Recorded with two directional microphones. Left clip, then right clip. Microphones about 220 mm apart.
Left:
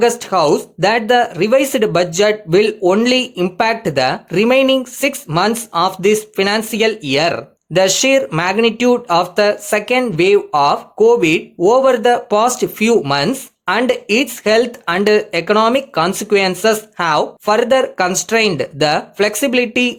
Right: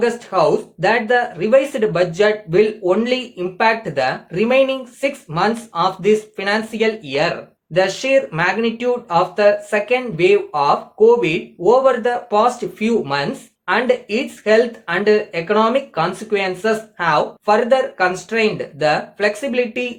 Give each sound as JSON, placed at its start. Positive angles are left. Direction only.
{"t": 0.0, "sound": "speech", "side_deg": 50}